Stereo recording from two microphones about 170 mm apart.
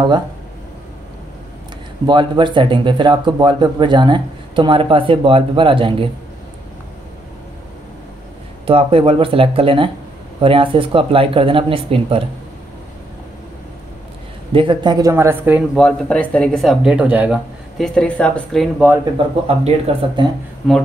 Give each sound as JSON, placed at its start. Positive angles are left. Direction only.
{"t": 2.0, "sound": "speech", "side_deg": -25}
{"t": 8.6, "sound": "speech", "side_deg": -30}
{"t": 14.5, "sound": "speech", "side_deg": -30}
{"t": 15.7, "sound": "speech", "side_deg": 5}
{"t": 19.4, "sound": "speech", "side_deg": -35}
{"t": 20.6, "sound": "speech", "side_deg": 0}